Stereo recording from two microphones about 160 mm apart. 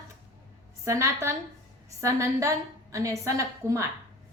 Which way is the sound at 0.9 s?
15° right (ahead or behind).